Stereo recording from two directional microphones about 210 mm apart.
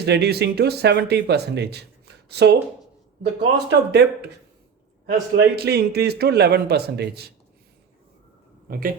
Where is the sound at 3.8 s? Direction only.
55° right (ahead or behind).